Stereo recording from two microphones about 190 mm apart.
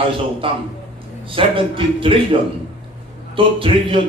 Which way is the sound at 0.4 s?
30° right (ahead or behind).